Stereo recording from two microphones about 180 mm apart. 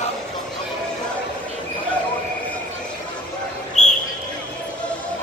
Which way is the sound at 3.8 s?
40° left (ahead or behind).